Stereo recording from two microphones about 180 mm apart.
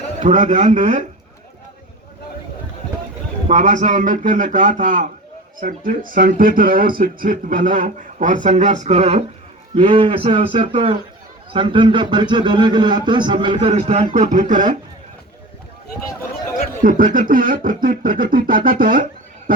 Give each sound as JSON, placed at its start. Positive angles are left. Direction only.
{"t": 0.2, "sound": "speech", "side_deg": -40}
{"t": 3.5, "sound": "a man's voice", "side_deg": -45}
{"t": 16.8, "sound": "speech", "side_deg": -50}